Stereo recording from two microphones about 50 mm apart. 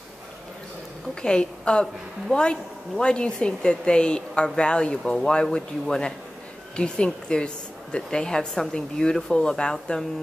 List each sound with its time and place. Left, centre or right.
1.2 s a woman's voice: centre